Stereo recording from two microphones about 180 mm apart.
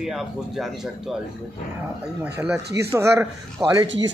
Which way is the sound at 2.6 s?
65° right (ahead or behind).